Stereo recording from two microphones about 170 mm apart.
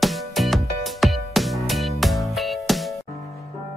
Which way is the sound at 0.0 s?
Centre (ahead or behind).